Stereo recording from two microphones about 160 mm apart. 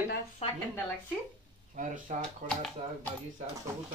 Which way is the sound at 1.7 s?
55° right (ahead or behind).